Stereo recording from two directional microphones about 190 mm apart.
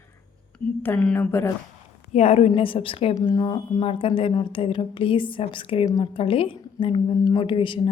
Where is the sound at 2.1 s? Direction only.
35° left (ahead or behind).